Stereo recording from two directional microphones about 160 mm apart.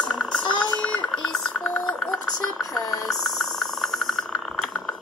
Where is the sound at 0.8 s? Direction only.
5° left (ahead or behind).